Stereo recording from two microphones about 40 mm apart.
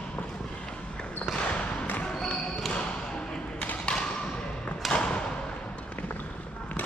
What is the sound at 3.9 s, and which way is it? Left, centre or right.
Thump, left.